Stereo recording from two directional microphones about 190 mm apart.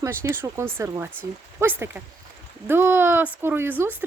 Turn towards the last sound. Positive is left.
turn(degrees=-10)  # may be behind; listen again after turning